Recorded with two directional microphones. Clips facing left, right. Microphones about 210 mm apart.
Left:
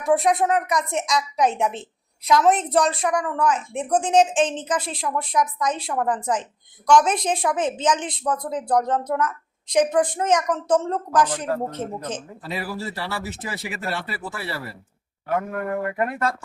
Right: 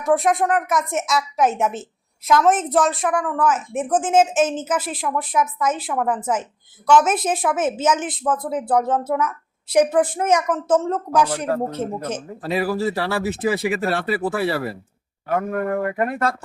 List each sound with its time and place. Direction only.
0.0 s a woman's voice: centre (ahead or behind)
12.4 s speech: 60° right (ahead or behind)